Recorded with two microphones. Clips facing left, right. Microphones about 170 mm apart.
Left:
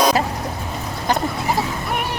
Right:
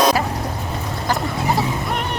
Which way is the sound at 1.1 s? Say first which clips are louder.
Left 2 dB; 20° left (ahead or behind).